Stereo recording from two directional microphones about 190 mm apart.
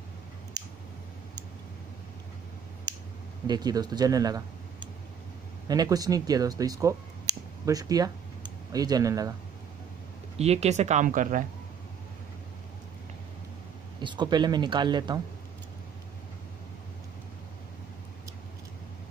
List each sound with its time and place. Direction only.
0.6 s clicking: 20° right (ahead or behind)
3.4 s speech: 20° right (ahead or behind)
10.3 s speech: 35° right (ahead or behind)
14.0 s speech: 25° right (ahead or behind)